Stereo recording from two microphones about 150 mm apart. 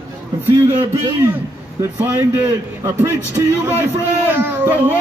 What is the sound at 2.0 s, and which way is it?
A man's voice, 15° right (ahead or behind).